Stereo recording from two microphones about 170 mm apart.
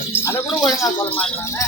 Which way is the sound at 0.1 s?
15° left (ahead or behind).